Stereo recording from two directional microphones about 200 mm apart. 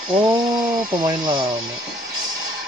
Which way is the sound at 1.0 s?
20° right (ahead or behind).